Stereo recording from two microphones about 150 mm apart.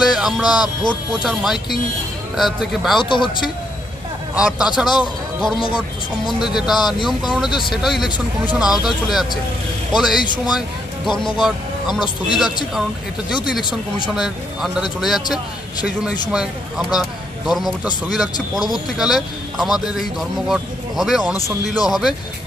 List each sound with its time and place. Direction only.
0.1 s a man's voice: 5° right (ahead or behind)
3.0 s speech: 35° left (ahead or behind)
4.4 s a man's voice: 5° right (ahead or behind)
6.8 s speech: 30° left (ahead or behind)
7.1 s a man's voice: centre (ahead or behind)
10.2 s speech: 30° left (ahead or behind)
11.3 s speech: 5° right (ahead or behind)
13.4 s speech: 30° left (ahead or behind)
14.1 s a man's voice: 5° right (ahead or behind)